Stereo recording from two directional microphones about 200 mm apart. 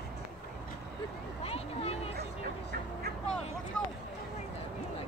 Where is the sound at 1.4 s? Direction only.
30° left (ahead or behind).